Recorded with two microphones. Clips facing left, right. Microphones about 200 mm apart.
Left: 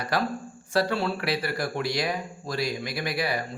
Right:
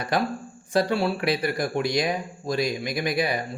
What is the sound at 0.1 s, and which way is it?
Speech, 20° right (ahead or behind).